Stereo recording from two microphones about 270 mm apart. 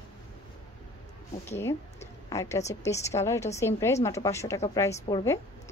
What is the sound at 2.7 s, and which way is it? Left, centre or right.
A woman's voice, centre.